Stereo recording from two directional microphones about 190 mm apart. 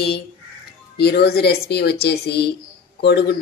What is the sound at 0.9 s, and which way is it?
A woman's voice, 60° left (ahead or behind).